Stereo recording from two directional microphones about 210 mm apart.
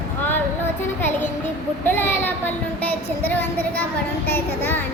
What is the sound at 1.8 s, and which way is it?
A child's voice, 10° left (ahead or behind).